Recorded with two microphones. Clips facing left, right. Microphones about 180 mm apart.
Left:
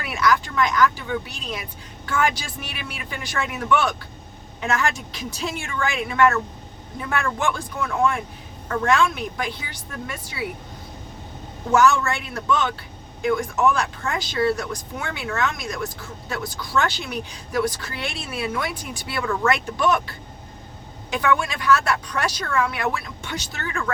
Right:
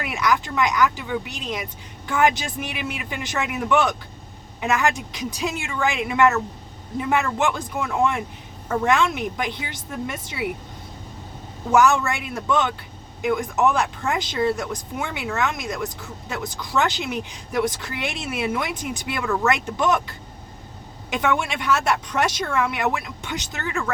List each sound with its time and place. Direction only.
0.0 s a woman's voice: 20° right (ahead or behind)
11.7 s a woman's voice: 20° right (ahead or behind)